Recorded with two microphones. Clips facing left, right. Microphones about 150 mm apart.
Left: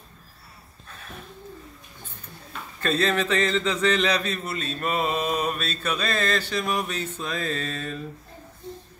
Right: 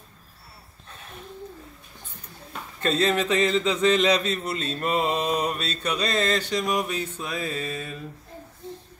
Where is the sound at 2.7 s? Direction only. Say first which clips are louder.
Right 1 dB; 25° right (ahead or behind).